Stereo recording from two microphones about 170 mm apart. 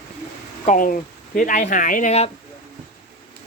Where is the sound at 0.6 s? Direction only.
50° left (ahead or behind).